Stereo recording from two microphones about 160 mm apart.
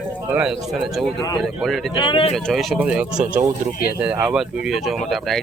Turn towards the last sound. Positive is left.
turn(degrees=0)  # may be behind; listen again after turning